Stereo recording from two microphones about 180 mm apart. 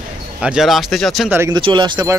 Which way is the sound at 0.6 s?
Centre (ahead or behind).